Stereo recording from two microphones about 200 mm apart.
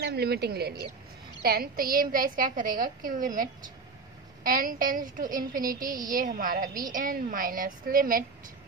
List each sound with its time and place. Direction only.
0.0 s a woman's voice: 55° right (ahead or behind)
5.9 s a woman's voice: 20° right (ahead or behind)
6.1 s a woman's voice: 45° right (ahead or behind)